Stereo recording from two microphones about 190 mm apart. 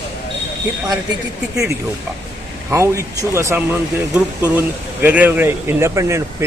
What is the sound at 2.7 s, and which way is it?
Speech, 15° right (ahead or behind).